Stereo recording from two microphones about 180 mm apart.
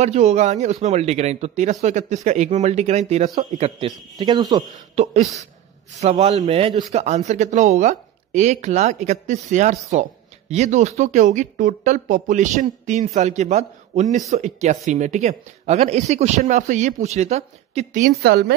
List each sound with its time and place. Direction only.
0.0 s speech: 35° right (ahead or behind)
4.9 s speech: 40° right (ahead or behind)
18.1 s a woman's voice: 60° right (ahead or behind)